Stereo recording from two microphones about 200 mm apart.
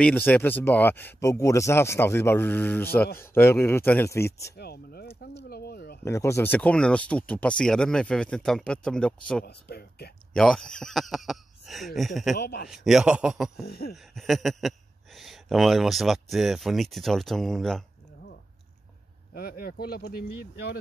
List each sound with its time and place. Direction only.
0.0 s speech: 10° left (ahead or behind)
4.6 s a sound: 50° left (ahead or behind)
6.0 s speech: 15° left (ahead or behind)
9.4 s speech: 50° left (ahead or behind)
10.3 s speech: 5° left (ahead or behind)
12.4 s speech: 50° left (ahead or behind)
12.6 s speech: centre (ahead or behind)
13.7 s speech: 50° left (ahead or behind)
13.9 s speech: centre (ahead or behind)
19.3 s speech: 50° left (ahead or behind)